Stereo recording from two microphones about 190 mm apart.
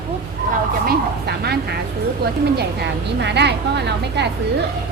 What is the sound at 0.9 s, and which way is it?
Speech, 55° right (ahead or behind).